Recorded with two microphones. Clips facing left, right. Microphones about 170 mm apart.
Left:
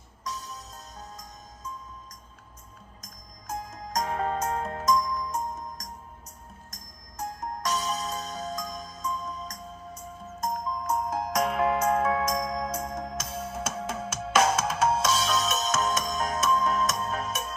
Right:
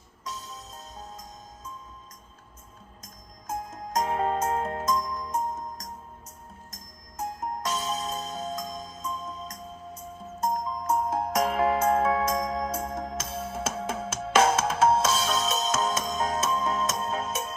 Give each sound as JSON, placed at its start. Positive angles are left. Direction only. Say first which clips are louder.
{"t": 0.3, "sound": "music", "louder": "left 1 dB", "side_deg": -25}
{"t": 3.7, "sound": "music", "louder": "right 3 dB", "side_deg": -25}
{"t": 7.2, "sound": "music", "louder": "right 2 dB", "side_deg": -25}